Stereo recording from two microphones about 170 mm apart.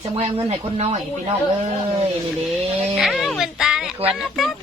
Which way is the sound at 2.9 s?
Centre (ahead or behind).